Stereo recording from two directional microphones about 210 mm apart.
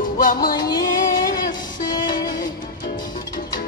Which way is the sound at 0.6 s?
20° left (ahead or behind).